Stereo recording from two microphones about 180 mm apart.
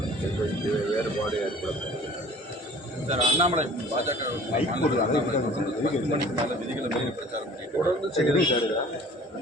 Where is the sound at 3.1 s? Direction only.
40° right (ahead or behind).